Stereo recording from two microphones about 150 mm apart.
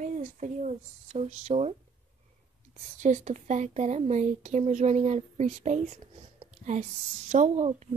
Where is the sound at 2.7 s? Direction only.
50° right (ahead or behind).